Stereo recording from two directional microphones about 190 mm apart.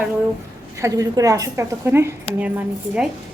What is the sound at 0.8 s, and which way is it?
A woman's voice, 20° right (ahead or behind).